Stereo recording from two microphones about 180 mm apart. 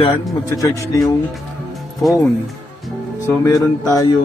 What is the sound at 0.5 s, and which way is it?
Speech, 20° left (ahead or behind).